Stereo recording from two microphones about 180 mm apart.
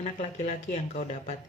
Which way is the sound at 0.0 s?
40° left (ahead or behind).